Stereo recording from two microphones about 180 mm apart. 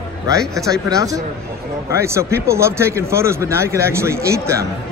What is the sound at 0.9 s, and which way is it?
Speech, 20° right (ahead or behind).